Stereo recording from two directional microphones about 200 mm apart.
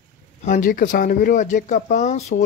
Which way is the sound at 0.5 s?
40° left (ahead or behind).